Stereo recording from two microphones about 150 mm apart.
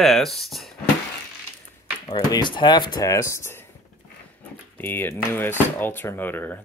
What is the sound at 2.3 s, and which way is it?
Speech, 30° left (ahead or behind).